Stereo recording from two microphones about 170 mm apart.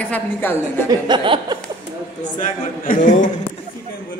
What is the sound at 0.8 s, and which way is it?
Speech, 25° right (ahead or behind).